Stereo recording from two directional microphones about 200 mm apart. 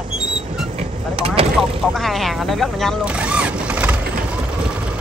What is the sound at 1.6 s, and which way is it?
Speech, centre (ahead or behind).